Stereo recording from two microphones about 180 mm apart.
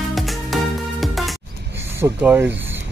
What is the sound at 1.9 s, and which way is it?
Speech, 10° right (ahead or behind).